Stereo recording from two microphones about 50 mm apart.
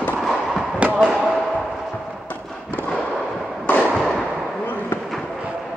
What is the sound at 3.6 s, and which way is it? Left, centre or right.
Fireworks, left.